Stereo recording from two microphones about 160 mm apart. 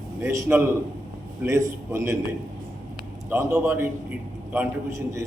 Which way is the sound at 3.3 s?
15° right (ahead or behind).